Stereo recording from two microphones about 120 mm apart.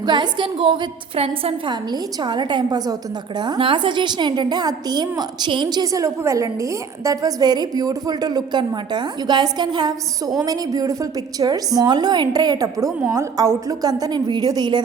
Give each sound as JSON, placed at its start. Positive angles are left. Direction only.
{"t": 0.0, "sound": "a woman's voice", "side_deg": -40}
{"t": 1.7, "sound": "a woman's voice", "side_deg": -35}